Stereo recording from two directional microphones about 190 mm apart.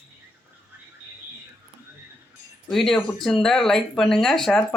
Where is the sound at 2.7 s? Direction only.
Centre (ahead or behind).